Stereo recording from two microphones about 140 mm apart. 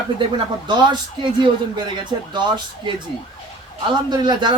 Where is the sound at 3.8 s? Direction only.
30° right (ahead or behind).